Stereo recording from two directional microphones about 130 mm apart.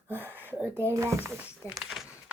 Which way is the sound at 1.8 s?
Centre (ahead or behind).